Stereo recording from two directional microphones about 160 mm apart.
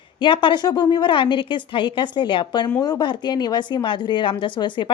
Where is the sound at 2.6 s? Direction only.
20° left (ahead or behind).